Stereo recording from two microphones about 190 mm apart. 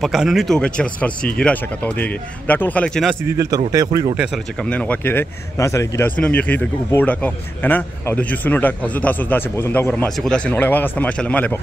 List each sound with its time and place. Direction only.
0.0 s speech: centre (ahead or behind)
3.3 s speech: 15° right (ahead or behind)
4.6 s speech: 5° left (ahead or behind)